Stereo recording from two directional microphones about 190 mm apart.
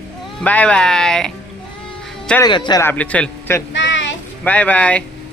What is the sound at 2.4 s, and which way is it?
Speech, 25° left (ahead or behind).